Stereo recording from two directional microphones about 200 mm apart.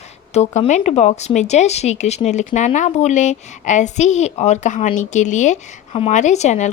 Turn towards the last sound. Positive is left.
turn(degrees=35)  # may be behind; listen again after turning